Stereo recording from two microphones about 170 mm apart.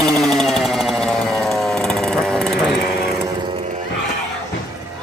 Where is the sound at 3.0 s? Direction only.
25° right (ahead or behind).